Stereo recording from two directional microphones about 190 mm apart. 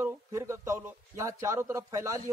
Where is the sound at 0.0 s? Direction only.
15° right (ahead or behind).